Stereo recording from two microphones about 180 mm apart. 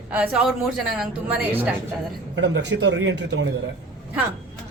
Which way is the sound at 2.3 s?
80° right.